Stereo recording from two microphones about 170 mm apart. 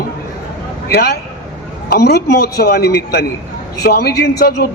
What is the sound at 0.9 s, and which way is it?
A man's voice, 70° left (ahead or behind).